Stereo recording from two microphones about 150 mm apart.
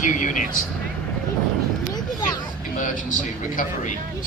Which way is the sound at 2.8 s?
60° left (ahead or behind).